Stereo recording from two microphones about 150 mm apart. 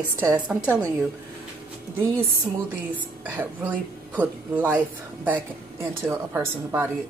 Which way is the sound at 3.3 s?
10° right (ahead or behind).